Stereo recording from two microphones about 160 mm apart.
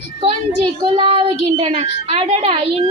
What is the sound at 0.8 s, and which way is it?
Speech, 35° right (ahead or behind).